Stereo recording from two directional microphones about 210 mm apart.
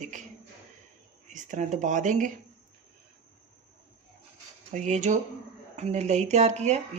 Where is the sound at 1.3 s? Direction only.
35° right (ahead or behind).